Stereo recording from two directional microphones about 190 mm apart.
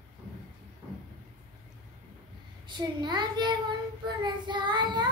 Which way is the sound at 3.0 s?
25° right (ahead or behind).